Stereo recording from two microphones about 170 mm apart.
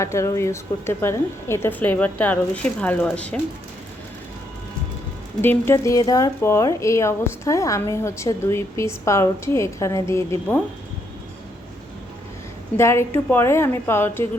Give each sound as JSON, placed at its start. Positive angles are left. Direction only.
{"t": 0.0, "sound": "speech", "side_deg": 15}
{"t": 5.4, "sound": "speech", "side_deg": 15}
{"t": 12.7, "sound": "speech", "side_deg": 15}